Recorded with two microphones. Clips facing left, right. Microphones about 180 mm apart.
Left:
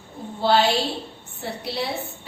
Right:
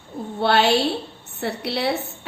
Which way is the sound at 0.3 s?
65° right (ahead or behind).